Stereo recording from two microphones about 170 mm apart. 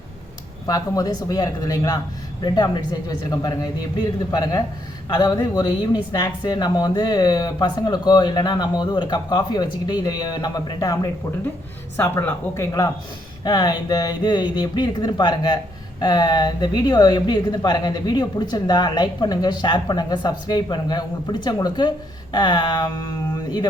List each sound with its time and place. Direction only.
0.7 s speech: 20° left (ahead or behind)